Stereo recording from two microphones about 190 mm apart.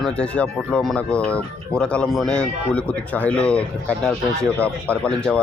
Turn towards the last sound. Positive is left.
turn(degrees=5)  # may be behind; listen again after turning